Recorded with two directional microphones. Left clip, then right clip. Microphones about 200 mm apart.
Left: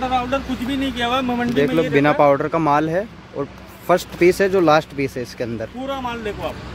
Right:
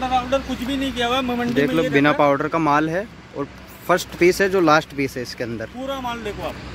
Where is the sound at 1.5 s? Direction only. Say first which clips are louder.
Left 1 dB; centre (ahead or behind).